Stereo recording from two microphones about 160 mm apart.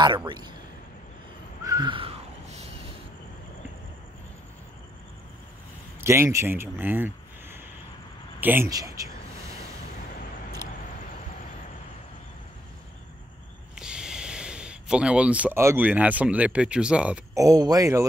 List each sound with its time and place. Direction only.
0.0 s speech: 30° right (ahead or behind)
1.6 s a sound: 25° right (ahead or behind); by 2.7 s 40° right (ahead or behind)
5.9 s speech: 15° right (ahead or behind)
8.6 s speech: 20° right (ahead or behind)
13.7 s speech: 5° right (ahead or behind)
17.3 s speech: 20° right (ahead or behind)